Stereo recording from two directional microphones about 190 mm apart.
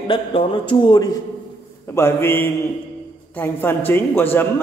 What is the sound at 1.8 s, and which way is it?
A man's voice, 15° left (ahead or behind).